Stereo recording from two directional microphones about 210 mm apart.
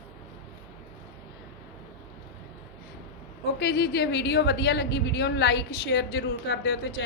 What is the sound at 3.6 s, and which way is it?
A woman's voice, 50° left (ahead or behind).